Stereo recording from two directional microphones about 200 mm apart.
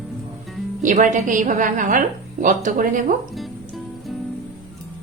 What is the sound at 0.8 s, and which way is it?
A woman's voice, 40° right (ahead or behind).